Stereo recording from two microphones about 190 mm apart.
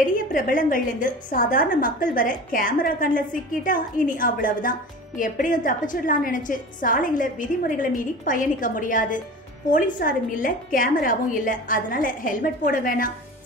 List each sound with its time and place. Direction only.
0.0 s a woman's voice: 45° left (ahead or behind)